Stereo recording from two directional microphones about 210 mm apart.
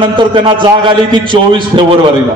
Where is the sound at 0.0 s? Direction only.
25° right (ahead or behind).